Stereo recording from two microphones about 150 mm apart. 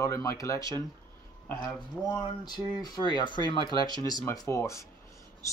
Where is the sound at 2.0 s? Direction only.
25° left (ahead or behind).